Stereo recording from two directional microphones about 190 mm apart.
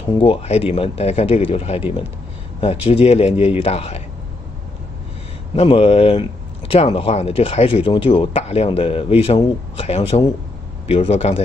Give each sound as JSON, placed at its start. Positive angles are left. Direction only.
{"t": 0.0, "sound": "speech", "side_deg": 30}
{"t": 5.6, "sound": "speech", "side_deg": 30}